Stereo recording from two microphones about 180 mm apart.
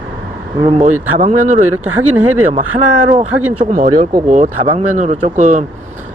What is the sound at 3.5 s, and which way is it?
Speech, 45° right (ahead or behind).